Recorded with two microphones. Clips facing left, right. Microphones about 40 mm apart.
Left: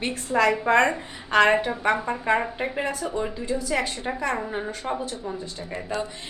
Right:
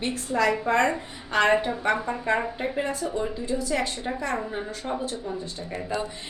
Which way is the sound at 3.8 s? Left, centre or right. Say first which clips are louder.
Left 1 dB; centre.